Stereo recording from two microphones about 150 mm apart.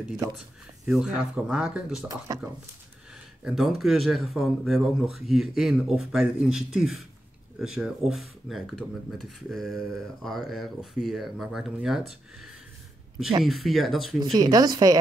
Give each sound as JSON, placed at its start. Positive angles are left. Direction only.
{"t": 0.8, "sound": "speech", "side_deg": -5}
{"t": 2.0, "sound": "speech", "side_deg": -25}
{"t": 3.4, "sound": "speech", "side_deg": 0}
{"t": 14.3, "sound": "speech", "side_deg": -25}